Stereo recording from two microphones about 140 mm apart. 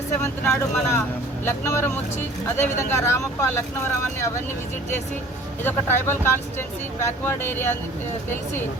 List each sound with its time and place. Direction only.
0.4 s speech: 20° left (ahead or behind)
2.9 s speech: 20° left (ahead or behind)
5.6 s speech: 15° left (ahead or behind)